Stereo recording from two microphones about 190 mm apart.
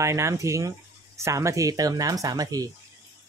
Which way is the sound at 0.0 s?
15° right (ahead or behind).